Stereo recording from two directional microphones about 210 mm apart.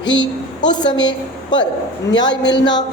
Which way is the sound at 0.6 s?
20° left (ahead or behind).